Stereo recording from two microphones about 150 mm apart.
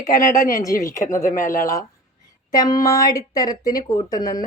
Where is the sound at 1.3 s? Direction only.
60° left (ahead or behind).